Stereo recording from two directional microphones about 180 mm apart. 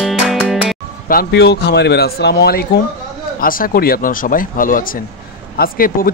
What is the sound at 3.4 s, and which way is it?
A man's voice, 50° left (ahead or behind).